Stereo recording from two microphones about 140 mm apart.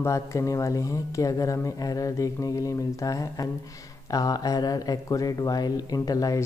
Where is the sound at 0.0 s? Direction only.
20° left (ahead or behind).